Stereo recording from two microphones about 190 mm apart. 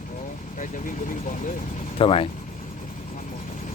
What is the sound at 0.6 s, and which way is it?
Speech, 45° left (ahead or behind).